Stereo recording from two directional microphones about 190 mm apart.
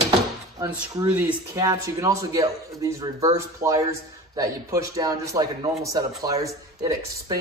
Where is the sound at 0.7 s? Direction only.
10° right (ahead or behind).